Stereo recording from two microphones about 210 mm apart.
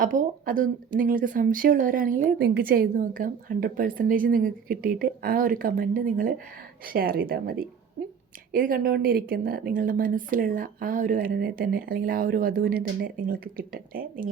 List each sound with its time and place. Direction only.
0.0 s a woman's voice: 40° right (ahead or behind)